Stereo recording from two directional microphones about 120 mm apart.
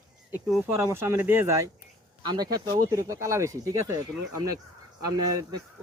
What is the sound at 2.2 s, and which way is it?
Speech, 35° right (ahead or behind).